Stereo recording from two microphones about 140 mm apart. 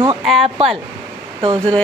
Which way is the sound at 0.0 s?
40° right (ahead or behind).